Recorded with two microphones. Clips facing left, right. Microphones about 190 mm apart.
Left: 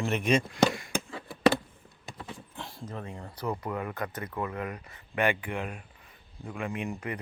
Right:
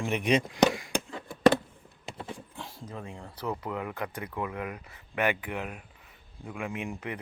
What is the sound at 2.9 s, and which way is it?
Speech, 10° right (ahead or behind).